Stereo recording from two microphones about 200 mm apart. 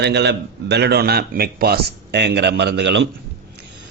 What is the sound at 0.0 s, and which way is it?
Speech, 55° right (ahead or behind).